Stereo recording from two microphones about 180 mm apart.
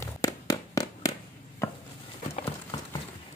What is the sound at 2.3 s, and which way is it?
Horse, 30° left (ahead or behind).